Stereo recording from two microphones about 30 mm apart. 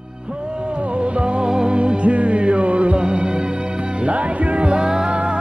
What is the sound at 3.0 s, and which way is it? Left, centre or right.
Music, right.